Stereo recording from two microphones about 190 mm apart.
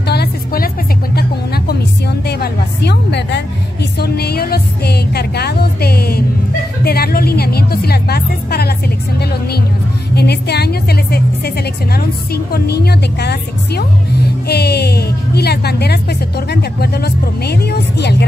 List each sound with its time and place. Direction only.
0.0 s music: 60° left (ahead or behind)
10.1 s music: 60° left (ahead or behind)